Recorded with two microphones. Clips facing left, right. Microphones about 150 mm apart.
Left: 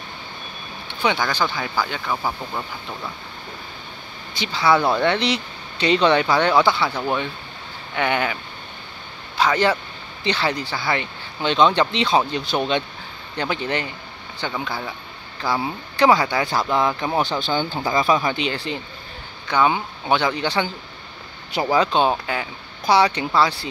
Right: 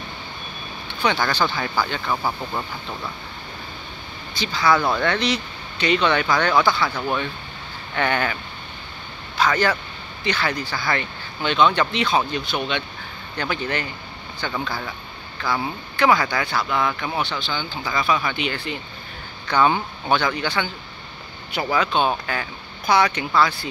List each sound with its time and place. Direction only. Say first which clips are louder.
1.0 s speech: even; 10° left (ahead or behind)
4.3 s speech: left 1 dB; 25° left (ahead or behind)
10.2 s speech: left 2 dB; 30° left (ahead or behind)
13.4 s speech: left 2 dB; 25° left (ahead or behind)
14.5 s speech: right 1 dB; 10° left (ahead or behind)
15.4 s speech: left 1 dB; 35° left (ahead or behind)
17.8 s speech: left 2 dB; 30° left (ahead or behind)
19.4 s speech: even; 15° left (ahead or behind)
20.2 s speech: left 2 dB; 25° left (ahead or behind)
22.1 s speech: left 2 dB; 20° left (ahead or behind)
22.8 s speech: left 2 dB; 30° left (ahead or behind)